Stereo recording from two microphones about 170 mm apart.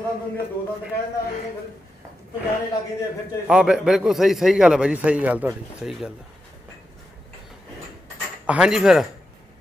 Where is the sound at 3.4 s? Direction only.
5° right (ahead or behind).